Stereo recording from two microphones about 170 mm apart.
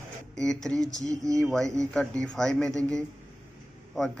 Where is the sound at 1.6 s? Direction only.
20° right (ahead or behind).